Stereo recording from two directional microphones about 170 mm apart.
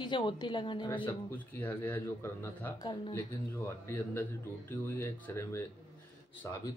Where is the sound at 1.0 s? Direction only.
10° left (ahead or behind).